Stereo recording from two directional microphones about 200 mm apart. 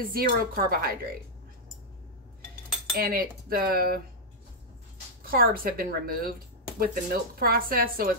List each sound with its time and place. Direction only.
0.1 s speech: 50° right (ahead or behind)
3.0 s speech: 50° right (ahead or behind)
5.2 s speech: 50° right (ahead or behind)